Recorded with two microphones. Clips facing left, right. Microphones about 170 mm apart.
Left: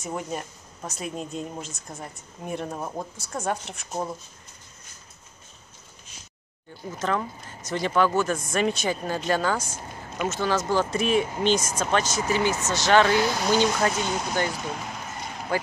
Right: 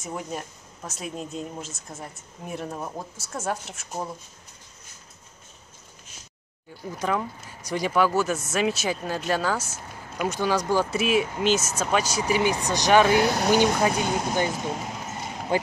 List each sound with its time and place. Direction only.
0.0 s speech: centre (ahead or behind)
6.8 s speech: 10° right (ahead or behind)